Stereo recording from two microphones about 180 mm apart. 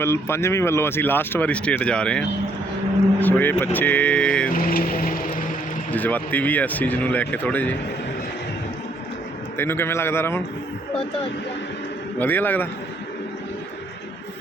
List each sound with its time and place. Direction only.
0.0 s speech: 15° left (ahead or behind)
4.5 s a sound: 55° left (ahead or behind)
5.9 s speech: 10° left (ahead or behind)
9.6 s speech: 10° left (ahead or behind)
12.2 s speech: 10° left (ahead or behind)